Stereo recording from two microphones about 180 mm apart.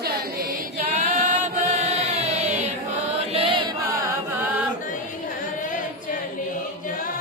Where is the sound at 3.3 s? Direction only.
30° right (ahead or behind).